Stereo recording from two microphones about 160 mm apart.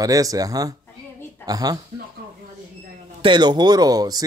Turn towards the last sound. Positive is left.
turn(degrees=-25)  # may be behind; listen again after turning